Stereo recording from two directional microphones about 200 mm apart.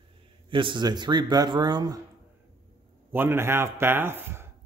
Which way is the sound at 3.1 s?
10° right (ahead or behind).